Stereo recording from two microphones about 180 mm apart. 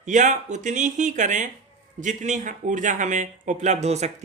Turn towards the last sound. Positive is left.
turn(degrees=-40)  # may be behind; listen again after turning